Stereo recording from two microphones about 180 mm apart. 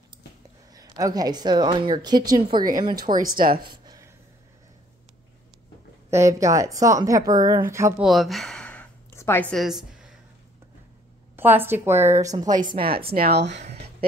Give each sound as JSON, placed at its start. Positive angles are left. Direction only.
{"t": 0.7, "sound": "a woman's voice", "side_deg": -20}
{"t": 3.2, "sound": "speech", "side_deg": -50}
{"t": 3.6, "sound": "a sound", "side_deg": -25}
{"t": 6.0, "sound": "a woman's voice", "side_deg": -15}
{"t": 8.0, "sound": "a sound", "side_deg": 0}
{"t": 11.3, "sound": "a woman's voice", "side_deg": -10}
{"t": 12.8, "sound": "speech", "side_deg": -55}
{"t": 13.6, "sound": "speech", "side_deg": -35}